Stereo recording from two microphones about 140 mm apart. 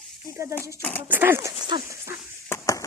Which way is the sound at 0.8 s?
10° left (ahead or behind).